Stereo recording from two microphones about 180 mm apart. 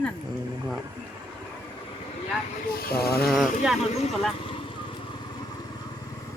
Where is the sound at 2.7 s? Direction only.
60° left (ahead or behind).